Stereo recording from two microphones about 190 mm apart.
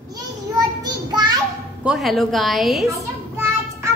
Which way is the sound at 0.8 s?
20° right (ahead or behind).